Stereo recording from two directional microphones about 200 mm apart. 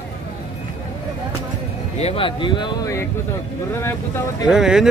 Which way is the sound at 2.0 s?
30° left (ahead or behind).